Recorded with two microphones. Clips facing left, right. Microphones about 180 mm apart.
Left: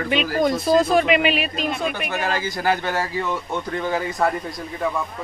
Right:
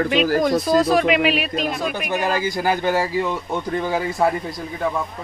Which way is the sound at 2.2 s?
15° right (ahead or behind).